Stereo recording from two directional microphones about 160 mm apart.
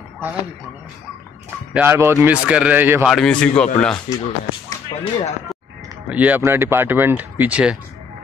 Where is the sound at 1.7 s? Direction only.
15° right (ahead or behind).